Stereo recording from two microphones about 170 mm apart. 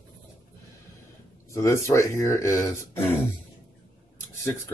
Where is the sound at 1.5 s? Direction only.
20° left (ahead or behind).